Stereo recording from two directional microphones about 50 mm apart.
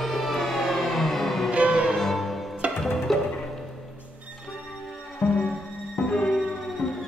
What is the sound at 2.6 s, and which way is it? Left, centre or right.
Music, right.